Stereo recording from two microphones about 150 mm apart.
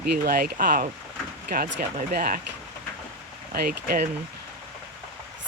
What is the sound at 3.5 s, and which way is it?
Speech, 90° right.